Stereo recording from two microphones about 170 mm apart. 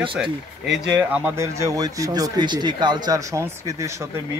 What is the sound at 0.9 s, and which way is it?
Speech, 10° right (ahead or behind).